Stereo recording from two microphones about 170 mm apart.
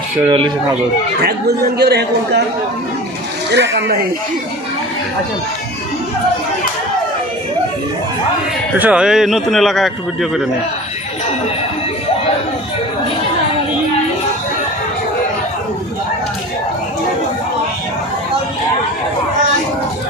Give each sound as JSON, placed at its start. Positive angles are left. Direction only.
{"t": 0.3, "sound": "speech", "side_deg": -30}
{"t": 1.2, "sound": "speech", "side_deg": -70}
{"t": 3.5, "sound": "speech", "side_deg": -90}
{"t": 8.8, "sound": "a man's voice", "side_deg": -5}